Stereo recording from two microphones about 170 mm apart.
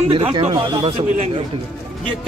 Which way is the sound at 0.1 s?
30° right (ahead or behind).